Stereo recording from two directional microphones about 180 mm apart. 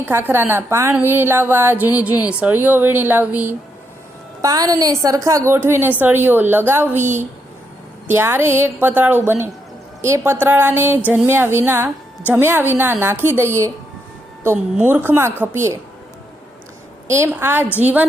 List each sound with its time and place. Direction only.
0.0 s a woman's voice: 10° right (ahead or behind)
7.0 s a woman's voice: 40° right (ahead or behind)
8.0 s a woman's voice: 10° right (ahead or behind)
17.1 s a woman's voice: 15° right (ahead or behind)